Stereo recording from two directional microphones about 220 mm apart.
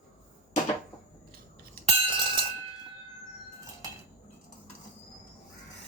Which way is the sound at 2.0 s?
25° right (ahead or behind).